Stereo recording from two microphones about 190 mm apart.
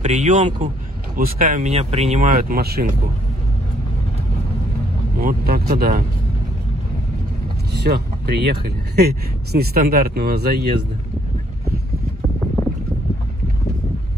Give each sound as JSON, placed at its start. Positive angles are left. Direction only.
{"t": 0.0, "sound": "speech", "side_deg": -40}
{"t": 5.2, "sound": "speech", "side_deg": -50}
{"t": 7.7, "sound": "speech", "side_deg": -55}